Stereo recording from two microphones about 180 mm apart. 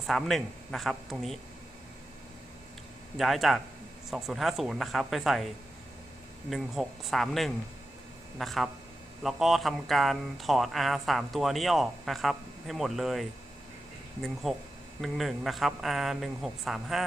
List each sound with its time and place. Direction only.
0.1 s speech: centre (ahead or behind)
3.2 s speech: centre (ahead or behind)
6.5 s speech: centre (ahead or behind)
14.4 s speech: centre (ahead or behind)